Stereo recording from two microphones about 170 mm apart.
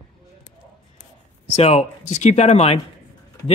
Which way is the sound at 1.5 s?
40° left (ahead or behind).